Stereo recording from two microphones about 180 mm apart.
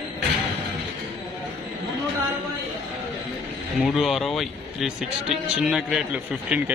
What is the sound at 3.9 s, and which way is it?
Speech, centre (ahead or behind).